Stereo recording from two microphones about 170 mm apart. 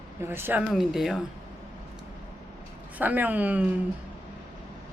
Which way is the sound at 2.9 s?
10° right (ahead or behind).